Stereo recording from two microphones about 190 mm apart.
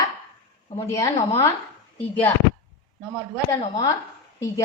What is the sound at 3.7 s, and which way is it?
Speech, 15° left (ahead or behind).